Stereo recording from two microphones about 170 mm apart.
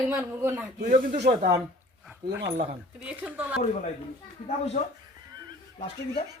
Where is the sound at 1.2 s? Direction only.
70° right (ahead or behind).